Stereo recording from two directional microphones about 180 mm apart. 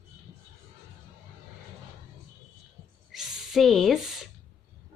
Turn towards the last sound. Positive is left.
turn(degrees=0)  # may be behind; listen again after turning